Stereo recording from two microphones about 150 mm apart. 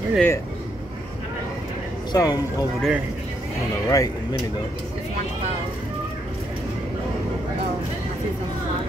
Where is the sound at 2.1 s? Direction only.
25° left (ahead or behind).